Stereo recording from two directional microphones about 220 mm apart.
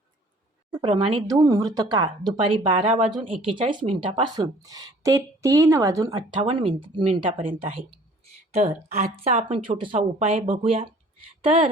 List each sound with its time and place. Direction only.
0.8 s a woman's voice: 25° right (ahead or behind)